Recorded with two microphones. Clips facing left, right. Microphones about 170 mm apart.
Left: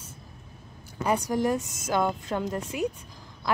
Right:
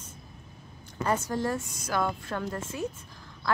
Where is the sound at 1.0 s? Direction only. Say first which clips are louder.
Left 3 dB; 15° left (ahead or behind).